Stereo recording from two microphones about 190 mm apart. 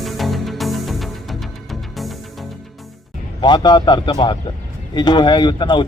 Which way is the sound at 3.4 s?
20° left (ahead or behind).